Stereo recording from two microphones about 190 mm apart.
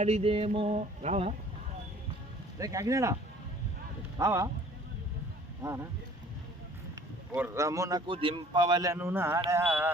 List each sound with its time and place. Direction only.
0.0 s a sound: 30° right (ahead or behind)
2.6 s a man's voice: 20° right (ahead or behind)
4.2 s a man's voice: 15° right (ahead or behind)
7.3 s a man's voice: 10° right (ahead or behind)